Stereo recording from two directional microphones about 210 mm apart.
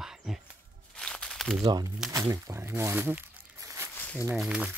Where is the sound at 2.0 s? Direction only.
15° right (ahead or behind).